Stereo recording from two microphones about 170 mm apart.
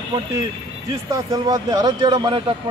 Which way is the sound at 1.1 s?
20° right (ahead or behind).